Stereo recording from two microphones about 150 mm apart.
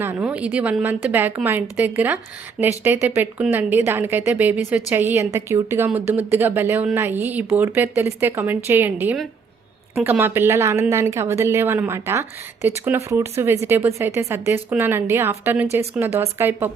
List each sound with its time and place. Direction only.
0.2 s speech: 10° right (ahead or behind)